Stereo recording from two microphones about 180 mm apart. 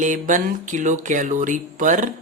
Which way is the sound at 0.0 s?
45° right (ahead or behind).